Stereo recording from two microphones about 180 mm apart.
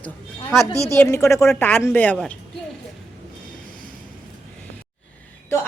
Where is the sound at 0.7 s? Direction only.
20° right (ahead or behind).